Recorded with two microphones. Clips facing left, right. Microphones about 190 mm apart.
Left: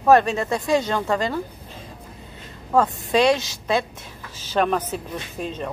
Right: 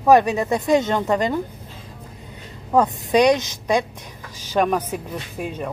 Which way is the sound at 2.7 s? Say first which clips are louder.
Right 2 dB; 15° right (ahead or behind).